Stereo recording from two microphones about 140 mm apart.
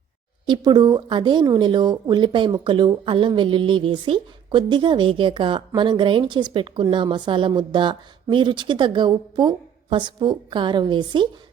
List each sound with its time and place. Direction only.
0.4 s speech: 30° right (ahead or behind)